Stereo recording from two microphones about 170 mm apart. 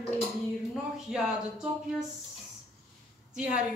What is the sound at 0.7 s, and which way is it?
Speech, 5° right (ahead or behind).